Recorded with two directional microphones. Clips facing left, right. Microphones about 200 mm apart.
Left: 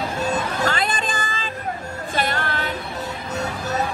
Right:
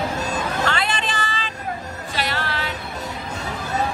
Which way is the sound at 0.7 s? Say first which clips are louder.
Left 1 dB; 45° left (ahead or behind).